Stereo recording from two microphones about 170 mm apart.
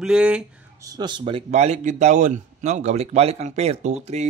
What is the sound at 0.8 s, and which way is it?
Speech, 25° right (ahead or behind).